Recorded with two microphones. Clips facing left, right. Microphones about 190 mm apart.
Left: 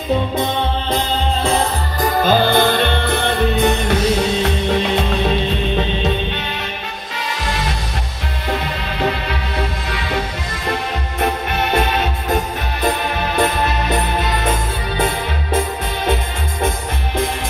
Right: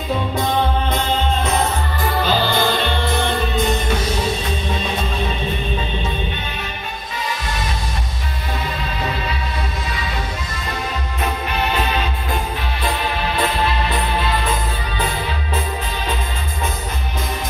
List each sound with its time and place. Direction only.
0.8 s music: 30° left (ahead or behind); by 6.4 s 70° left (ahead or behind)
9.0 s music: 65° left (ahead or behind)
13.4 s music: 45° left (ahead or behind)